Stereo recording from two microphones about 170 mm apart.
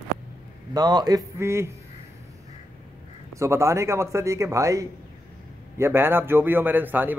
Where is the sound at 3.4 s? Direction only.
15° right (ahead or behind).